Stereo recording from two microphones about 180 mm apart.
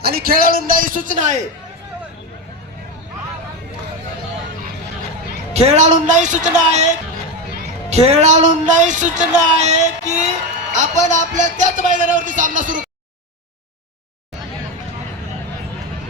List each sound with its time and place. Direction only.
0.0 s speech: 55° right (ahead or behind)
5.5 s speech: 40° right (ahead or behind)
7.9 s speech: 35° right (ahead or behind)